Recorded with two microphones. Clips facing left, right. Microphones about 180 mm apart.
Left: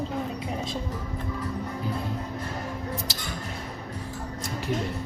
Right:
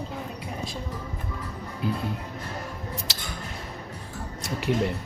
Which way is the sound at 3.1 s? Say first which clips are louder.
Left 2 dB; 70° right (ahead or behind).